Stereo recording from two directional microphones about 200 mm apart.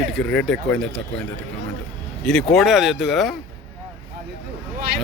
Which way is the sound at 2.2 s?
Centre (ahead or behind).